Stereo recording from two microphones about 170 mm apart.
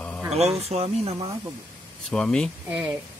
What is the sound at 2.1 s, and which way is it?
Speech, 5° left (ahead or behind).